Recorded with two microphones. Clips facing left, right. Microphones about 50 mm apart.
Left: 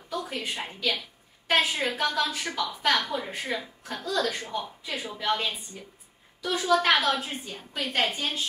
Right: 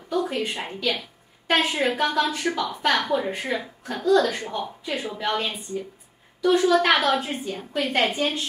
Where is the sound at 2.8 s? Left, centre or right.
Centre.